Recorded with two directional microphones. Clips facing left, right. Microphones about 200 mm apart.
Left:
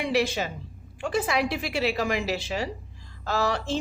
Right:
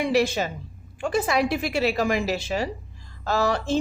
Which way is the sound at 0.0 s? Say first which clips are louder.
Right 3 dB; 45° right (ahead or behind).